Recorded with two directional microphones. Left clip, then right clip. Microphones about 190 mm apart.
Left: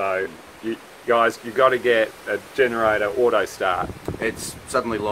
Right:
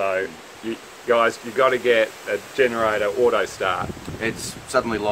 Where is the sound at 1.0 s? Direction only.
15° left (ahead or behind).